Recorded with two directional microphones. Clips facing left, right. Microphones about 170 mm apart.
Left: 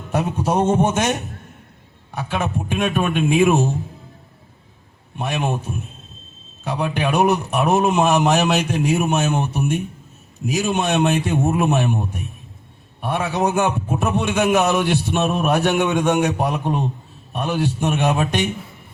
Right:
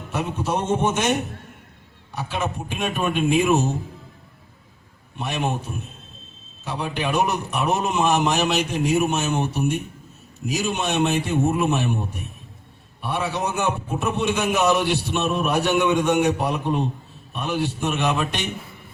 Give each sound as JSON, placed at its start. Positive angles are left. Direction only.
{"t": 0.1, "sound": "a man's voice", "side_deg": 50}
{"t": 2.1, "sound": "a man's voice", "side_deg": 55}
{"t": 5.1, "sound": "a man's voice", "side_deg": 50}
{"t": 6.7, "sound": "a man's voice", "side_deg": 50}
{"t": 13.0, "sound": "a man's voice", "side_deg": 50}